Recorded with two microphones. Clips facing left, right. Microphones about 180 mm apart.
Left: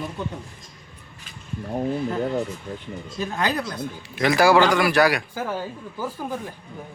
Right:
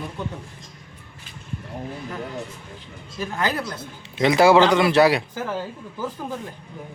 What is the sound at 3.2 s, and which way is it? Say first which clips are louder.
Speech: even; 20° left (ahead or behind).